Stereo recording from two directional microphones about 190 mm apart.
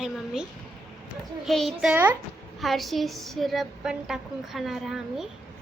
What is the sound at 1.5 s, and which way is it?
A woman's voice, centre (ahead or behind).